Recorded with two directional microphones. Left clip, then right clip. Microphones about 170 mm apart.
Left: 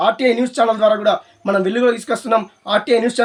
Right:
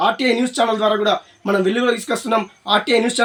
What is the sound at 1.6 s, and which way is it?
Speech, 50° left (ahead or behind).